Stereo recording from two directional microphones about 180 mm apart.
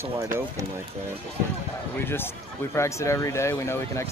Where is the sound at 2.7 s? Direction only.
15° left (ahead or behind).